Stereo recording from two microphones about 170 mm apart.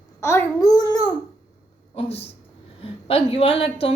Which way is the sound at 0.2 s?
15° left (ahead or behind).